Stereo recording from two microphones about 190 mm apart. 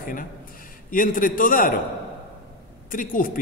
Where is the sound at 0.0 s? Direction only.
45° left (ahead or behind).